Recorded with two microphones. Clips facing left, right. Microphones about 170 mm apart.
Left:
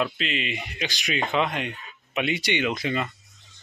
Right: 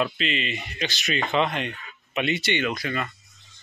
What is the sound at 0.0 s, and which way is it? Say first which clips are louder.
Speech: right 1 dB; 5° left (ahead or behind).